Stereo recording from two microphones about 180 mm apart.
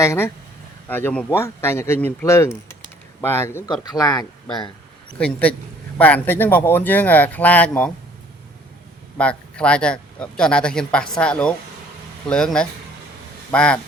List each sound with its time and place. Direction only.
0.0 s speech: 15° left (ahead or behind)
5.1 s speech: 5° left (ahead or behind)
9.1 s speech: 5° left (ahead or behind)